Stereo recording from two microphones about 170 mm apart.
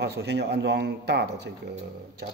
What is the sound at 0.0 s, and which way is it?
Speech, 85° right.